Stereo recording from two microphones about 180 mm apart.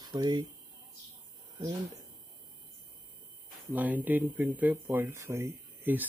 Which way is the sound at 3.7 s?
10° right (ahead or behind).